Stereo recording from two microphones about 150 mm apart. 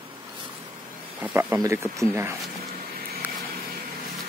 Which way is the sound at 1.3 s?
20° right (ahead or behind).